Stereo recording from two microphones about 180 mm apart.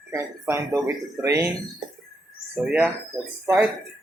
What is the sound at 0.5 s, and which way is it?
Speech, 15° right (ahead or behind).